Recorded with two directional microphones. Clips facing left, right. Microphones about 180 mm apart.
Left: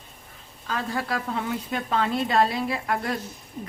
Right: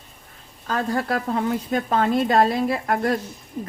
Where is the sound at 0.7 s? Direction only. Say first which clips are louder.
Right 5 dB; 45° right (ahead or behind).